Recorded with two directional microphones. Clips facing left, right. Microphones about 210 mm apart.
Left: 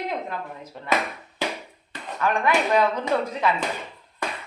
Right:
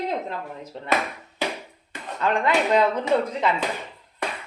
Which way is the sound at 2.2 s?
20° right (ahead or behind).